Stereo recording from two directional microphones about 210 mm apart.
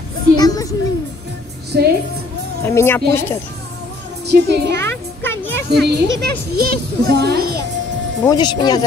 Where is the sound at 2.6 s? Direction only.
10° left (ahead or behind).